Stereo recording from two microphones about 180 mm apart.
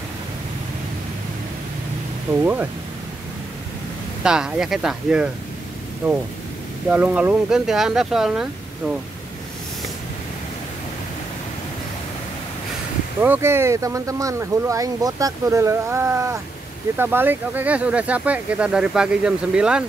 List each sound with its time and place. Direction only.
2.4 s speech: 10° right (ahead or behind)
4.2 s speech: 5° right (ahead or behind)
6.9 s speech: 10° right (ahead or behind)
13.2 s speech: 10° right (ahead or behind)